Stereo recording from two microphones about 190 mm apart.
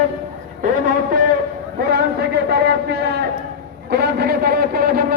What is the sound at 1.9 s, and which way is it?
A man's voice, 55° right (ahead or behind).